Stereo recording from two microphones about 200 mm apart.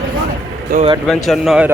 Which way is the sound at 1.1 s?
Centre (ahead or behind).